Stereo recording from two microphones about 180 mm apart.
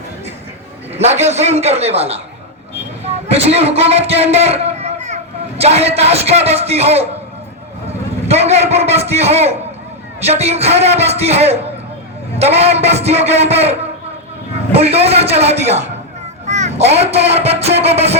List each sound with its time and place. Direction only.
0.9 s a man's voice: 40° right (ahead or behind)
8.3 s a man's voice: 35° right (ahead or behind)
10.5 s a man's voice: 35° right (ahead or behind)